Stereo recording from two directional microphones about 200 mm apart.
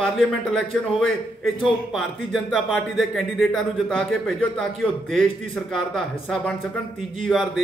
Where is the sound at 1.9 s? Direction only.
Centre (ahead or behind).